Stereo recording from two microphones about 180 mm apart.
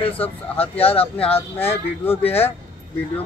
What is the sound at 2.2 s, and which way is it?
Speech, 35° left (ahead or behind).